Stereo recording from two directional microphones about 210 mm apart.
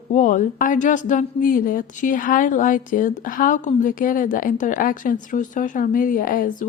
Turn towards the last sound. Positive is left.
turn(degrees=40)  # may be behind; listen again after turning